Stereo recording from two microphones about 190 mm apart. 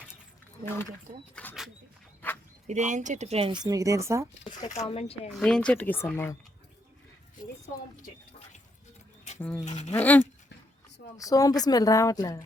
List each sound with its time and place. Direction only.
1.1 s speech: 50° right (ahead or behind)
2.2 s a sound: 10° left (ahead or behind)
2.6 s speech: 40° right (ahead or behind); by 4.3 s 15° right (ahead or behind)
4.9 s speech: 30° left (ahead or behind)
5.3 s speech: 5° left (ahead or behind)
9.4 s speech: 5° left (ahead or behind)
9.6 s speech: 40° left (ahead or behind)
9.9 s a woman's voice: 10° left (ahead or behind)